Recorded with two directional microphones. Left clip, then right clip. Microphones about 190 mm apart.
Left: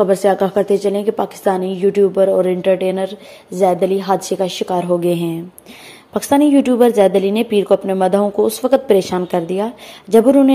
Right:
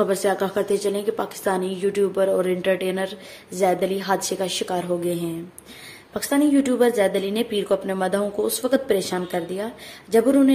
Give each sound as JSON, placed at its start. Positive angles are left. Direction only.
{"t": 0.0, "sound": "a woman's voice", "side_deg": 30}